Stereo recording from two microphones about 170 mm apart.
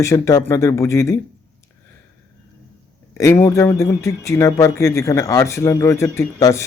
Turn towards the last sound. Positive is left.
turn(degrees=15)  # may be behind; listen again after turning